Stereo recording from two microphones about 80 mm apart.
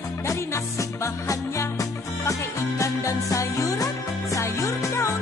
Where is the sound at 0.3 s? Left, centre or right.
Left.